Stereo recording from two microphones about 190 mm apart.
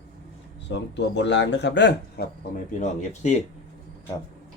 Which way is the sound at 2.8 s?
40° left (ahead or behind).